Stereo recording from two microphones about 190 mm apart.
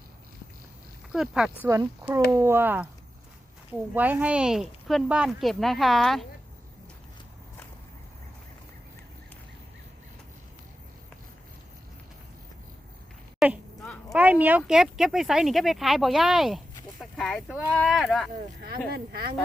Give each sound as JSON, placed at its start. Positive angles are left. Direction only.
{"t": 1.1, "sound": "speech", "side_deg": -5}
{"t": 1.6, "sound": "speech", "side_deg": -15}
{"t": 13.4, "sound": "speech", "side_deg": 0}
{"t": 17.0, "sound": "a sound", "side_deg": 0}
{"t": 17.8, "sound": "speech", "side_deg": 0}
{"t": 18.9, "sound": "speech", "side_deg": -55}